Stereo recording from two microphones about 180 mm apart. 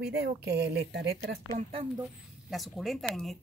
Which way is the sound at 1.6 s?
30° right (ahead or behind).